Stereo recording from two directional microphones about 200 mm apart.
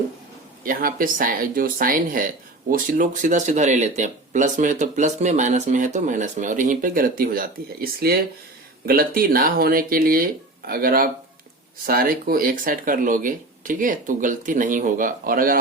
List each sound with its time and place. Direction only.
0.6 s speech: 45° right (ahead or behind)